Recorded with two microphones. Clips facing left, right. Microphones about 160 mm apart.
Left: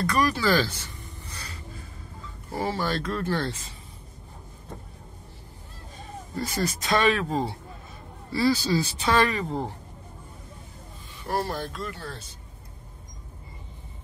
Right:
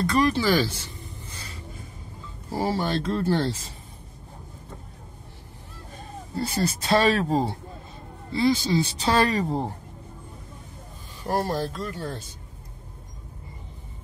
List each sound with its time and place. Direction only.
0.0 s speech: 25° right (ahead or behind)
2.5 s speech: 30° right (ahead or behind)
6.3 s speech: 30° right (ahead or behind)
8.3 s speech: 20° right (ahead or behind)
11.2 s speech: 40° right (ahead or behind)